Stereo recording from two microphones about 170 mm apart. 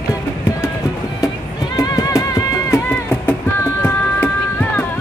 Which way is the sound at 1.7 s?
20° left (ahead or behind).